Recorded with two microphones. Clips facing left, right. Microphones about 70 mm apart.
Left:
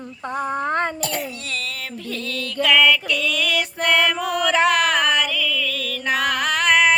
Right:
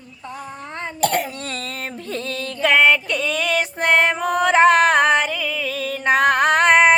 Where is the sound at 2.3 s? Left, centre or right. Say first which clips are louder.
Right 1 dB; right.